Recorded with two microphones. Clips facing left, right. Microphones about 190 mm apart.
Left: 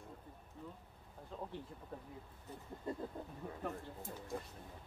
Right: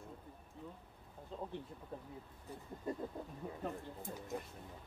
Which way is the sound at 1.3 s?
20° right (ahead or behind).